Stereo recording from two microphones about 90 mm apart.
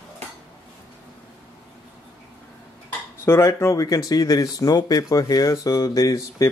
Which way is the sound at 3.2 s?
30° left (ahead or behind).